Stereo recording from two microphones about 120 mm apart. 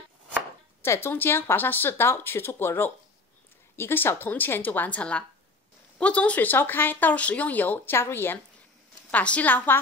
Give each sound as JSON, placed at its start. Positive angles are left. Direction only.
{"t": 0.8, "sound": "a woman's voice", "side_deg": 20}